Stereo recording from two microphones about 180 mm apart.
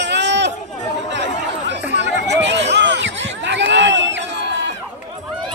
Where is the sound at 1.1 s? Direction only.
80° right.